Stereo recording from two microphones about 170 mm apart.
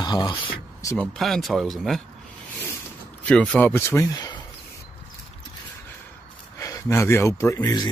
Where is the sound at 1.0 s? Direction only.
Centre (ahead or behind).